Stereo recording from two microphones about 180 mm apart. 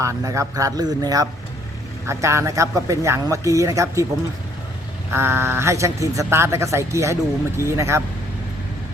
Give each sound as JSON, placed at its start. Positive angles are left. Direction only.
{"t": 0.0, "sound": "speech", "side_deg": -15}
{"t": 5.1, "sound": "speech", "side_deg": -15}